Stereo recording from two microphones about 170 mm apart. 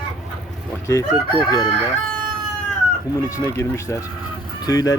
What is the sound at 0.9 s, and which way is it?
Speech, 20° left (ahead or behind).